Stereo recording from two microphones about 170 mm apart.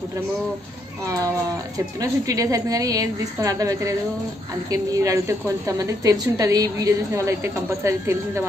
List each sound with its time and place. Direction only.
1.0 s a woman's voice: 20° right (ahead or behind)